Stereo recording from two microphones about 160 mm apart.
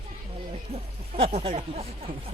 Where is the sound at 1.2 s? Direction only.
35° right (ahead or behind).